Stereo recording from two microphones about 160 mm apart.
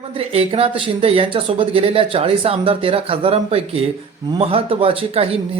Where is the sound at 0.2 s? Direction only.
35° right (ahead or behind).